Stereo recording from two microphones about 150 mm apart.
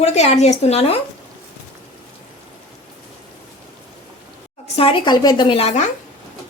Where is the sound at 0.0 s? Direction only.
45° left (ahead or behind).